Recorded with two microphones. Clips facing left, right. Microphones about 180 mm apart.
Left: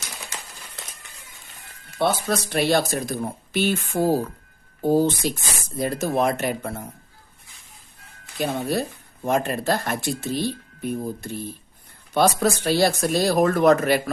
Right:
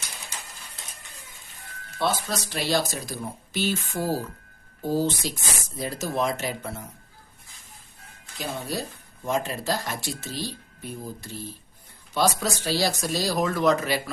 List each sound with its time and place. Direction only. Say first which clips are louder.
2.0 s speech: left 5 dB; 55° left (ahead or behind)
8.4 s speech: left 7 dB; 65° left (ahead or behind)